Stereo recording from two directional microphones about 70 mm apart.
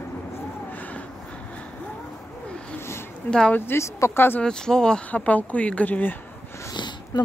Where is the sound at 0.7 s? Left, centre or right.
Left.